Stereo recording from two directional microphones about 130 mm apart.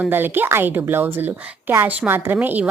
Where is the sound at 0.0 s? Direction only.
15° right (ahead or behind).